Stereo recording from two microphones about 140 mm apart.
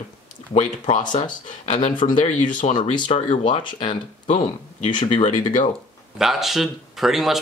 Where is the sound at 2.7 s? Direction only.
35° left (ahead or behind).